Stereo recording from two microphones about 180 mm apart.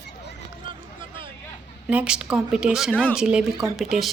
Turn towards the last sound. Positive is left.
turn(degrees=0)  # may be behind; listen again after turning